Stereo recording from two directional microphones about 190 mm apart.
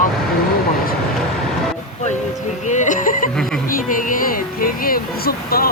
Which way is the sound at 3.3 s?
Centre (ahead or behind).